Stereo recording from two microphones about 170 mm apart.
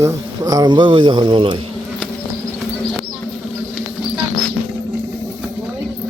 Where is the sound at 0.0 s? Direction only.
20° right (ahead or behind).